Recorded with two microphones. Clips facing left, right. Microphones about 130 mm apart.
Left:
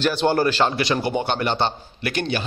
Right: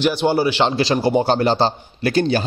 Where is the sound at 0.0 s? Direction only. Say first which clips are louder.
Right 2 dB; 10° right (ahead or behind).